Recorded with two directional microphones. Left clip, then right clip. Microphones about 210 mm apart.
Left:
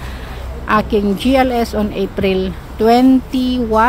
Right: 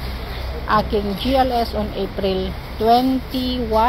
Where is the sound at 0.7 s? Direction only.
80° left.